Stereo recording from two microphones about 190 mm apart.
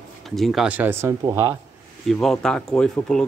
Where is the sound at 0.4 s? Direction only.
Centre (ahead or behind).